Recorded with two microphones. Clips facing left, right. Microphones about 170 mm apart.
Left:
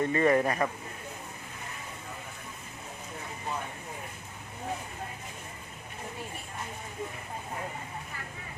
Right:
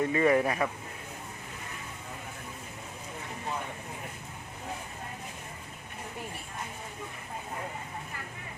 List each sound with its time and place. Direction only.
0.0 s speech: 10° right (ahead or behind)